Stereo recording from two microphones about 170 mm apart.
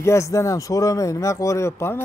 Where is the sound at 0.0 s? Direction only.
15° left (ahead or behind).